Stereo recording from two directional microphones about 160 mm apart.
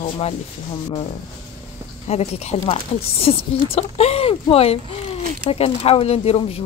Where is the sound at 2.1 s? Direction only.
40° left (ahead or behind).